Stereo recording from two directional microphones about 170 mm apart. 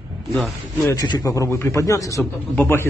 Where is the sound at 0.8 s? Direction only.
25° left (ahead or behind).